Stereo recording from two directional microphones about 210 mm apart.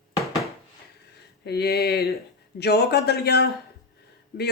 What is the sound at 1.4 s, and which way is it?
Speech, 50° left (ahead or behind).